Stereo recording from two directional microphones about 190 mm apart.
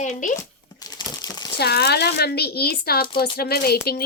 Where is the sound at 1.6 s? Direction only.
60° left (ahead or behind).